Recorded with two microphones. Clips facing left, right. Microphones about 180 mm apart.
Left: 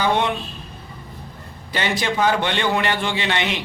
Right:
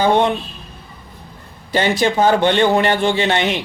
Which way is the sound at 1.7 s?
35° right (ahead or behind).